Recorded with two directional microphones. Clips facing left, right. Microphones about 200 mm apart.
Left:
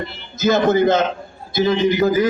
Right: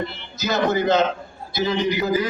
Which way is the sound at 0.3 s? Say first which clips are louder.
Left 6 dB; 50° left (ahead or behind).